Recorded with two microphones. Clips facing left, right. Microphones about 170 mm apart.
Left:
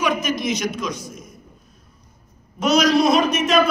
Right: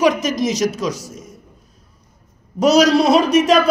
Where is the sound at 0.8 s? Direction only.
35° right (ahead or behind).